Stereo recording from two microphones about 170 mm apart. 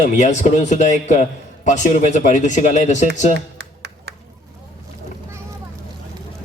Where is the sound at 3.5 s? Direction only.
80° right.